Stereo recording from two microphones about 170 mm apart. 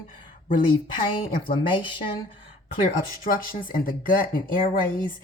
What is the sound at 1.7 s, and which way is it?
Speech, 30° left (ahead or behind).